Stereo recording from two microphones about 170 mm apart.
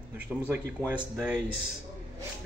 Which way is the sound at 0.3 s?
Centre (ahead or behind).